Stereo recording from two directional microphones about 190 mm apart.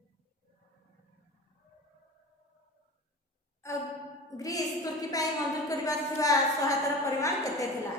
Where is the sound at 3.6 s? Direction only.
15° left (ahead or behind).